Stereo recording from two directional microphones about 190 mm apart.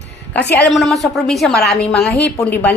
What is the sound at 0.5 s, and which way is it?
A woman's voice, 5° left (ahead or behind).